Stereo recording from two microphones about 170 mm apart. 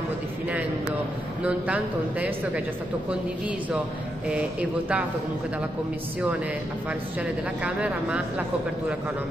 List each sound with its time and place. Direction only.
1.4 s speech: 10° right (ahead or behind)
6.9 s speech: 5° right (ahead or behind)